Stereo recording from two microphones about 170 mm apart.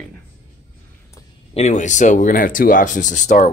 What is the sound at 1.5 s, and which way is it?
Speech, 45° left (ahead or behind).